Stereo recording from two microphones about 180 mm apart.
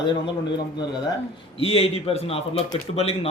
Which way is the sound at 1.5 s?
35° left (ahead or behind).